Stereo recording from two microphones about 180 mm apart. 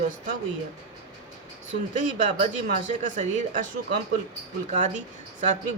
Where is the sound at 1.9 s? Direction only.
45° right (ahead or behind).